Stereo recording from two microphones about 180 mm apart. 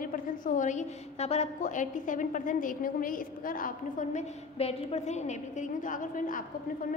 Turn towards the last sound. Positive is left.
turn(degrees=50)  # may be behind; listen again after turning